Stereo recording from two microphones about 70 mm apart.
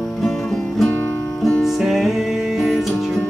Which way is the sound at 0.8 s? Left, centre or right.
Left.